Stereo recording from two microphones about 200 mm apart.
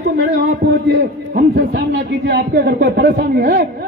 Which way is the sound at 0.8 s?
50° right (ahead or behind).